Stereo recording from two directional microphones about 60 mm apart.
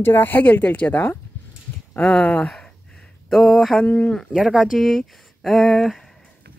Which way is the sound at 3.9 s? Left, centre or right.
Left.